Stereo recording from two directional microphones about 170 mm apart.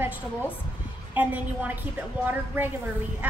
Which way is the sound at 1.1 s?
10° right (ahead or behind).